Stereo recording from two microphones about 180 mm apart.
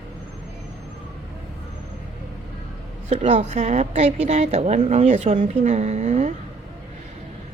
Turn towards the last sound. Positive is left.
turn(degrees=-40)  # may be behind; listen again after turning